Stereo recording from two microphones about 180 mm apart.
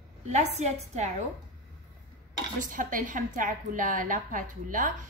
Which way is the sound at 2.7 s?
45° right (ahead or behind).